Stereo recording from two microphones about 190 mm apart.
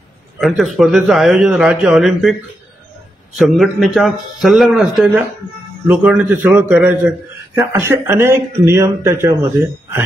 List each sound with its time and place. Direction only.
0.4 s a man's voice: centre (ahead or behind)
3.3 s a man's voice: centre (ahead or behind)